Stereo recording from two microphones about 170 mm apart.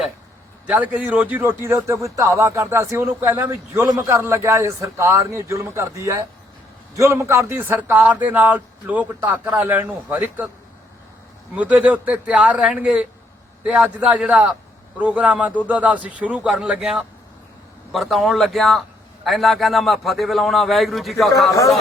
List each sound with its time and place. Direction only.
0.7 s a man's voice: 10° right (ahead or behind)
11.5 s a man's voice: 10° right (ahead or behind)